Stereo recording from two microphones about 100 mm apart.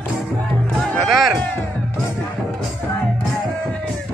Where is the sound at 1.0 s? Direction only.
Centre (ahead or behind).